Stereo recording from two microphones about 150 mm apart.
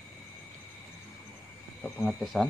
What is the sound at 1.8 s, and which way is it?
Speech, 10° left (ahead or behind).